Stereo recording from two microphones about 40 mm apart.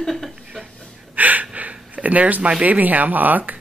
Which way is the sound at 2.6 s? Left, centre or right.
Right.